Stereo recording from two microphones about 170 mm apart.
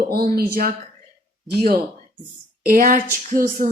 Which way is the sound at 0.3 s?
60° right (ahead or behind).